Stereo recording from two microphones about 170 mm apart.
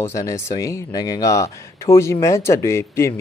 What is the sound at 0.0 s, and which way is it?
Speech, 20° left (ahead or behind).